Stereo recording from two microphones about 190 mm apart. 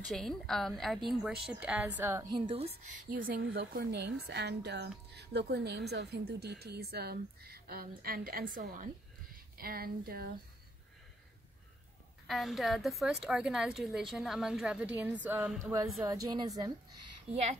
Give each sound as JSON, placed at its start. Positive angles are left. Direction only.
{"t": 0.1, "sound": "a woman's voice", "side_deg": 0}
{"t": 2.4, "sound": "speech", "side_deg": -30}
{"t": 3.3, "sound": "speech", "side_deg": -50}
{"t": 12.3, "sound": "a woman's voice", "side_deg": 0}
{"t": 15.6, "sound": "a woman's voice", "side_deg": -15}
{"t": 17.3, "sound": "speech", "side_deg": -35}